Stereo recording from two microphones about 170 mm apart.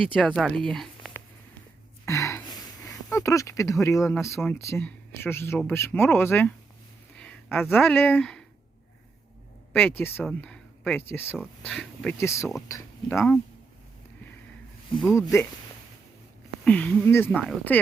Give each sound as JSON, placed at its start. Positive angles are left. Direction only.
{"t": 0.2, "sound": "speech", "side_deg": 0}
{"t": 2.0, "sound": "speech", "side_deg": 15}
{"t": 9.7, "sound": "speech", "side_deg": 10}
{"t": 12.2, "sound": "speech", "side_deg": 15}
{"t": 15.1, "sound": "speech", "side_deg": 15}
{"t": 16.6, "sound": "speech", "side_deg": 10}